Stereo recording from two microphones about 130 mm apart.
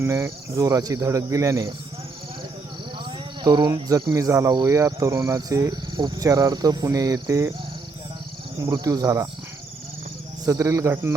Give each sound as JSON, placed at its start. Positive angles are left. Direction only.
{"t": 0.0, "sound": "speech", "side_deg": -20}
{"t": 3.4, "sound": "speech", "side_deg": -30}
{"t": 8.6, "sound": "speech", "side_deg": -25}
{"t": 10.4, "sound": "speech", "side_deg": -25}